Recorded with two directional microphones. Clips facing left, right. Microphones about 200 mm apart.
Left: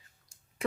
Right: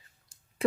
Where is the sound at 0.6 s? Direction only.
30° right (ahead or behind).